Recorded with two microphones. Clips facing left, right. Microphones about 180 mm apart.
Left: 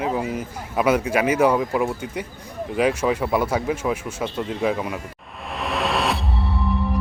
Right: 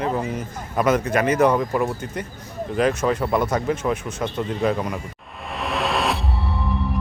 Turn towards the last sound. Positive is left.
turn(degrees=0)  # may be behind; listen again after turning